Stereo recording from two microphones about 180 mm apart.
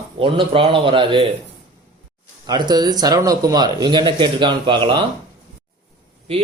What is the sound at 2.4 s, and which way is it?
Speech, 20° right (ahead or behind).